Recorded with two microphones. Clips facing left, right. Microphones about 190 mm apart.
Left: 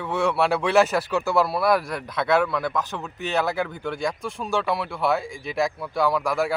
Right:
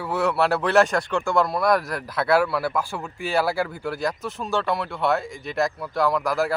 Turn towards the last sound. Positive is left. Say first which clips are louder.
# even
turn(degrees=0)  # may be behind; listen again after turning